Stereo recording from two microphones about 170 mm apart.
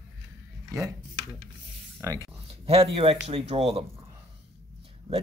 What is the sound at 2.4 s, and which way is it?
Speech, 35° right (ahead or behind).